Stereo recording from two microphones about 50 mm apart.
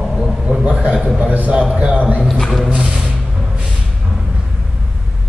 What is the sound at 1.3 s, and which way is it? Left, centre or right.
Speech, right.